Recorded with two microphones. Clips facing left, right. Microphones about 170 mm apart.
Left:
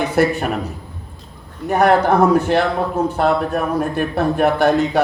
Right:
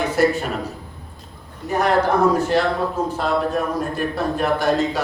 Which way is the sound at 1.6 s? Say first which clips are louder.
Left 4 dB; 60° left (ahead or behind).